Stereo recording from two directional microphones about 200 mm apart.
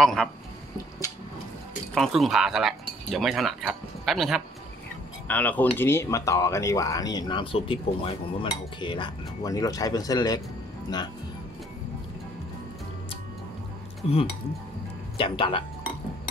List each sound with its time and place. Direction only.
0.0 s speech: centre (ahead or behind)
2.0 s speech: centre (ahead or behind); by 10.4 s 20° left (ahead or behind)
15.1 s speech: 25° left (ahead or behind)